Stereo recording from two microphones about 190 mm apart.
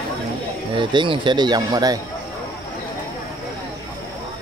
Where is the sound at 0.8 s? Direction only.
25° right (ahead or behind).